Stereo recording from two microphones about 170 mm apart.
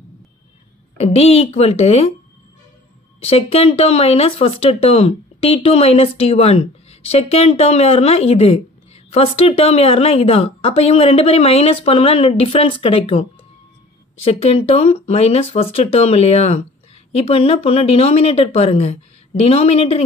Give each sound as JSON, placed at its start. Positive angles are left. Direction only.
{"t": 0.9, "sound": "speech", "side_deg": 40}
{"t": 3.2, "sound": "speech", "side_deg": 35}